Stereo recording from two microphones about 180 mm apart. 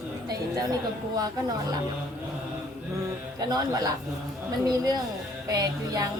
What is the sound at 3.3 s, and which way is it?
A woman's voice, 20° right (ahead or behind).